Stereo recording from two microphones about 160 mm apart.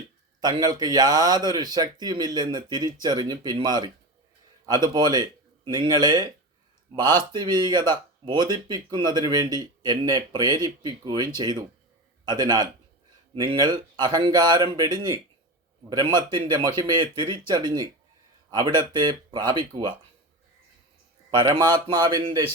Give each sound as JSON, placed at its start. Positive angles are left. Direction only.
{"t": 0.4, "sound": "a man's voice", "side_deg": -25}
{"t": 21.2, "sound": "speech", "side_deg": -25}